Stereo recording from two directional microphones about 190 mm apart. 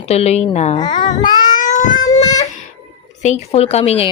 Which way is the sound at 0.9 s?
45° left (ahead or behind).